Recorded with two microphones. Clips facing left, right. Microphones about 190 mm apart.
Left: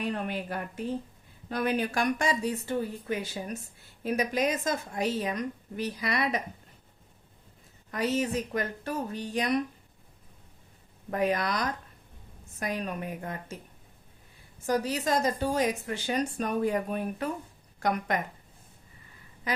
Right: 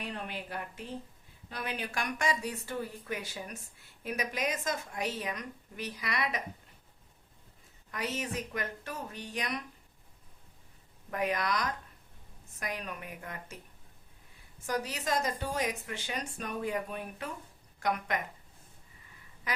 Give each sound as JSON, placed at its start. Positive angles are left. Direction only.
{"t": 0.0, "sound": "a woman's voice", "side_deg": 50}
{"t": 7.9, "sound": "a woman's voice", "side_deg": 35}
{"t": 11.1, "sound": "a woman's voice", "side_deg": 35}
{"t": 14.7, "sound": "a woman's voice", "side_deg": 35}